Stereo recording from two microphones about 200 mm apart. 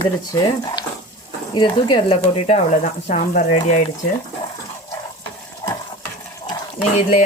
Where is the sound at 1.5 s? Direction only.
25° left (ahead or behind).